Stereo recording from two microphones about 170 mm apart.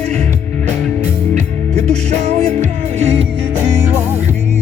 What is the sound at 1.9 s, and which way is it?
Music, 40° right (ahead or behind).